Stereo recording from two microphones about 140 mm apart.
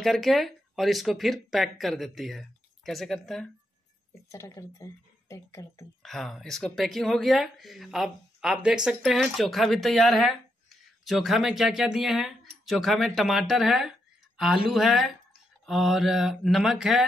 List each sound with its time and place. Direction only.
0.0 s speech: centre (ahead or behind)
4.3 s speech: 20° left (ahead or behind)
6.0 s speech: centre (ahead or behind)